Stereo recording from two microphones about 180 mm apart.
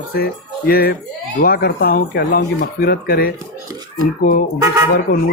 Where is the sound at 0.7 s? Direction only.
55° left (ahead or behind).